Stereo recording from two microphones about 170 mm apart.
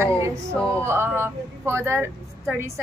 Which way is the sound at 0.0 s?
15° right (ahead or behind).